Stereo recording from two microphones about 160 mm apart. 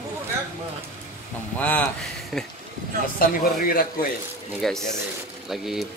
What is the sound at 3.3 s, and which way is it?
Speech, 65° left (ahead or behind).